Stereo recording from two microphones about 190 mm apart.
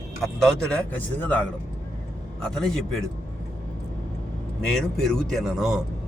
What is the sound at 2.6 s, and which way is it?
Speech, 5° left (ahead or behind).